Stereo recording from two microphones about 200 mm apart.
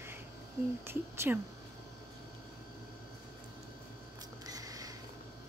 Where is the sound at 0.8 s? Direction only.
10° right (ahead or behind).